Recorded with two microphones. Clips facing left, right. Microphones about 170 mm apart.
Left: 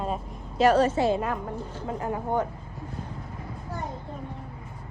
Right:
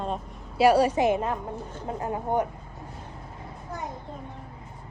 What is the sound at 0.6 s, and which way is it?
A woman's voice, 10° right (ahead or behind).